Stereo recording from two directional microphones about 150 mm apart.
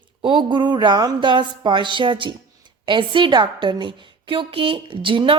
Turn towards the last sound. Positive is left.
turn(degrees=-35)  # may be behind; listen again after turning